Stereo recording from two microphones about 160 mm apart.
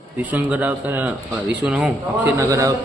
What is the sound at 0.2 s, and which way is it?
A man's voice, 10° right (ahead or behind).